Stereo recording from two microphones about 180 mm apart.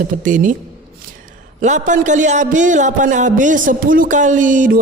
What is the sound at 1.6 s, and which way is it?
A man's voice, 40° right (ahead or behind).